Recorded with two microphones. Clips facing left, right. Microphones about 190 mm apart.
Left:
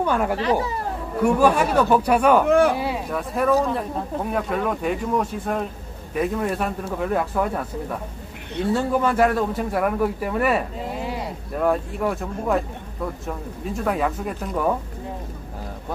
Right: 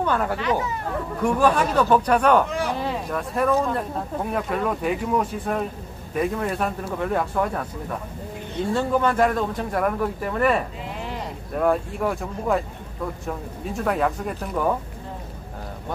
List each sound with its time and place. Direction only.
0.0 s speech: 10° left (ahead or behind)
0.4 s speech: 35° left (ahead or behind)
1.2 s speech: 10° left (ahead or behind)
8.7 s speech: 5° left (ahead or behind)